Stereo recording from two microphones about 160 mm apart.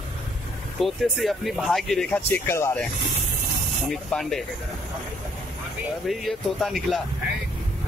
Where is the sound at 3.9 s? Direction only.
5° left (ahead or behind).